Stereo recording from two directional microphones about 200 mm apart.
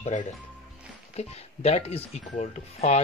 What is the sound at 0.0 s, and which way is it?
Speech, 40° left (ahead or behind).